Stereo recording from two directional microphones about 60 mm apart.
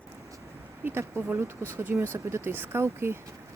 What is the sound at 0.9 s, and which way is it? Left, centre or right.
Speech, right.